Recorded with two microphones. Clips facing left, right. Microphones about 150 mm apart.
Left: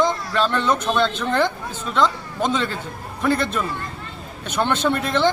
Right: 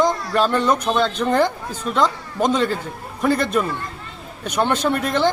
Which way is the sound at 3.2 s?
5° right (ahead or behind).